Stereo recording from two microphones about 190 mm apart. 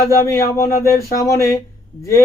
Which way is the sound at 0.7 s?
15° left (ahead or behind).